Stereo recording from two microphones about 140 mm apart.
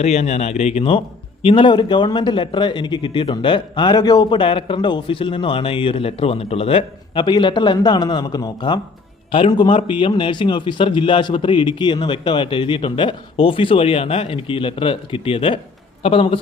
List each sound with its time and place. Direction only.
0.0 s a man's voice: 50° left (ahead or behind)